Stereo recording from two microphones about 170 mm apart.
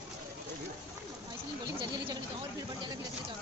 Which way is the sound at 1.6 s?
25° right (ahead or behind).